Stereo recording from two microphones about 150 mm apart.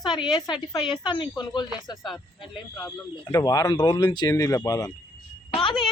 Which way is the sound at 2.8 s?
15° left (ahead or behind).